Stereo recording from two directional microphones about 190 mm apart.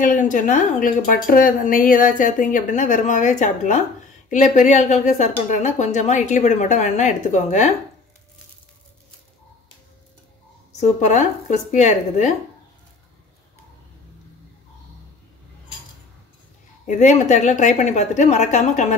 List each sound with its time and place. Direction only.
0.0 s a woman's voice: 40° left (ahead or behind)
10.8 s speech: 40° left (ahead or behind)
16.8 s speech: 40° left (ahead or behind)